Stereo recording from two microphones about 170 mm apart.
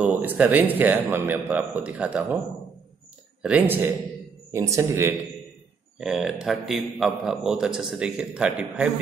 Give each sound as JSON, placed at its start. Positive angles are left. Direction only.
{"t": 0.0, "sound": "a man's voice", "side_deg": -10}
{"t": 3.4, "sound": "a man's voice", "side_deg": -10}
{"t": 5.9, "sound": "a man's voice", "side_deg": -5}